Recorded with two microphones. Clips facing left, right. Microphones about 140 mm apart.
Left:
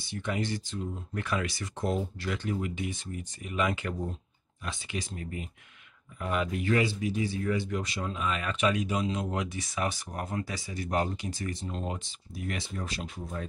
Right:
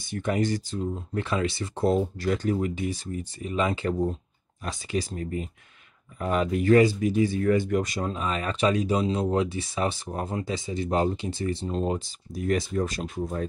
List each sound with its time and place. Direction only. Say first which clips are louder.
0.0 s speech: right 6 dB; 45° right (ahead or behind)
1.1 s speech: right 4 dB; 25° right (ahead or behind); by 13.5 s 45° right (ahead or behind)